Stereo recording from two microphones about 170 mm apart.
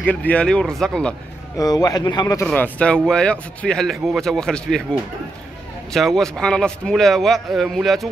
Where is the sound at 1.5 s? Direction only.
20° left (ahead or behind).